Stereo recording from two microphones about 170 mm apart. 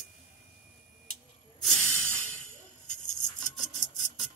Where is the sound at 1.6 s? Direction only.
5° left (ahead or behind).